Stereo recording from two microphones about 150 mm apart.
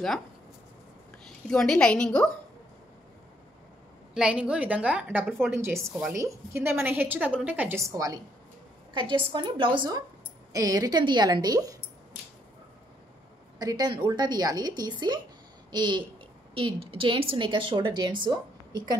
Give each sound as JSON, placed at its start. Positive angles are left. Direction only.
{"t": 1.5, "sound": "a woman's voice", "side_deg": 5}
{"t": 4.1, "sound": "a woman's voice", "side_deg": -5}
{"t": 9.3, "sound": "a woman's voice", "side_deg": -35}
{"t": 13.6, "sound": "a woman's voice", "side_deg": -25}